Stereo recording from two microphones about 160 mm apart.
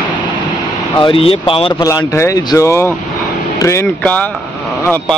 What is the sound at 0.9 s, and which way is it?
Speech, 30° left (ahead or behind).